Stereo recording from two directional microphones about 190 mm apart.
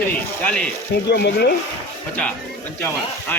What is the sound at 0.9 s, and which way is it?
Speech, 60° left (ahead or behind).